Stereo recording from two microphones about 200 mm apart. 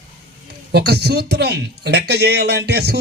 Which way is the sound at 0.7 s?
55° right (ahead or behind).